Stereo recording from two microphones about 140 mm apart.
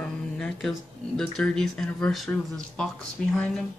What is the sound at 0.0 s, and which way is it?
Speech, 5° left (ahead or behind).